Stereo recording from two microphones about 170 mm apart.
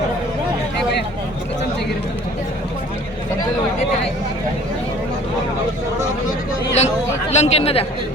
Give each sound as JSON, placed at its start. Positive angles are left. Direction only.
{"t": 6.7, "sound": "chatter", "side_deg": 40}